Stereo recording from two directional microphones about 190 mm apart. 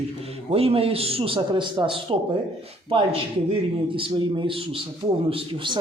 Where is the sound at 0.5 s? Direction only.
30° right (ahead or behind).